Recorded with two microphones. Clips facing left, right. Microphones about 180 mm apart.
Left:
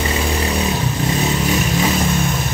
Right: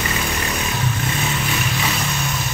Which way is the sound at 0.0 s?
30° left (ahead or behind).